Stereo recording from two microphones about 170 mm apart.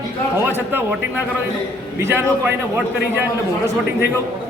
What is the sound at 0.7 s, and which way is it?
A man's voice, 10° right (ahead or behind).